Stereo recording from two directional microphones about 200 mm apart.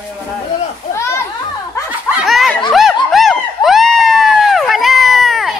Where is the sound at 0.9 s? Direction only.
15° left (ahead or behind).